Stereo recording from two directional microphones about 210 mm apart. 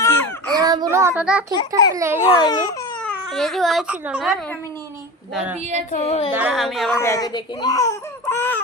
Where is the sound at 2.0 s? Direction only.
10° right (ahead or behind).